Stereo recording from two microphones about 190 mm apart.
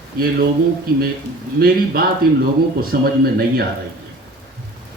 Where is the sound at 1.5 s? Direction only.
55° right (ahead or behind).